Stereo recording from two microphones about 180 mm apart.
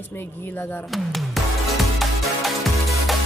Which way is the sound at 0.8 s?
Centre (ahead or behind).